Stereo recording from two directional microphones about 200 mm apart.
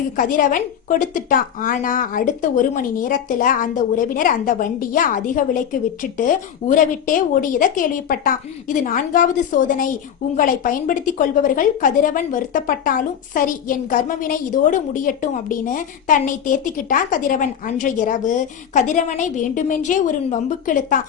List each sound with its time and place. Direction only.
0.2 s a woman's voice: 40° left (ahead or behind)